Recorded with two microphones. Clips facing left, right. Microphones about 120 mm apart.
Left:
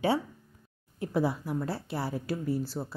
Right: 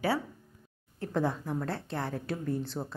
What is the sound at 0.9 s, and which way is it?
A woman's voice, 10° left (ahead or behind).